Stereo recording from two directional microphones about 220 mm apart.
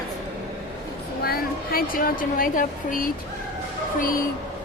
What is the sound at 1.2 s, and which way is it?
A woman's voice, 45° left (ahead or behind).